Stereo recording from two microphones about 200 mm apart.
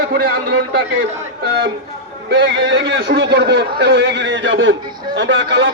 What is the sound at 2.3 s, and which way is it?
A man's voice, 60° right (ahead or behind).